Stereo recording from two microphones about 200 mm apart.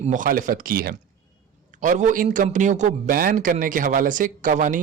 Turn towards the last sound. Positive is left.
turn(degrees=-40)  # may be behind; listen again after turning